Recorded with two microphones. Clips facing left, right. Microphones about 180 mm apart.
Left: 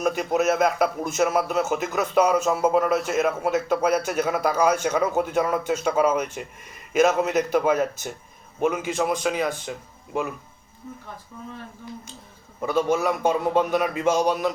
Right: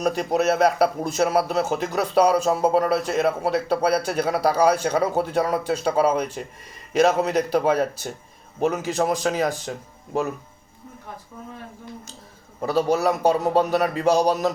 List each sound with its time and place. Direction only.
0.0 s a man's voice: 35° right (ahead or behind)
12.6 s a man's voice: 35° right (ahead or behind)